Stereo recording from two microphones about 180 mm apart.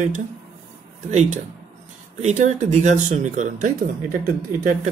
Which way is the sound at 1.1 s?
40° right (ahead or behind).